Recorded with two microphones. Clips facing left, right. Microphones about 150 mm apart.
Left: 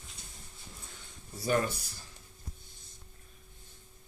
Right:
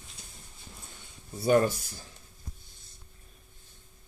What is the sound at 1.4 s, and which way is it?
Speech, 30° right (ahead or behind).